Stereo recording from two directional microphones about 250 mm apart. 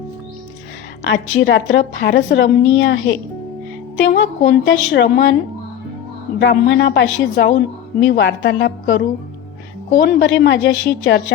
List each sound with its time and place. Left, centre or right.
1.0 s a woman's voice: left
6.4 s a woman's voice: left